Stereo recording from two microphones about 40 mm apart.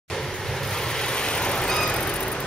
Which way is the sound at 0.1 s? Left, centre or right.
Centre.